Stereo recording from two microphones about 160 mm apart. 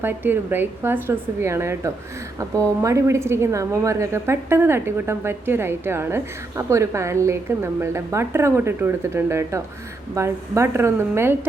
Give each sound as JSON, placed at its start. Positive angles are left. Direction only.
{"t": 0.0, "sound": "a woman's voice", "side_deg": -15}